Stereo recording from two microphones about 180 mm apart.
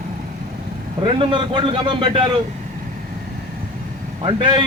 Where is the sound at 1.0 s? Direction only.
30° right (ahead or behind).